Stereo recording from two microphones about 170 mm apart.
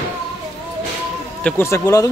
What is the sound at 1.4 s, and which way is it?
Speech, 15° left (ahead or behind).